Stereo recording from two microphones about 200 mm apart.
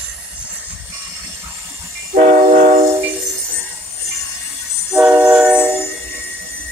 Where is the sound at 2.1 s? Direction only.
40° right (ahead or behind).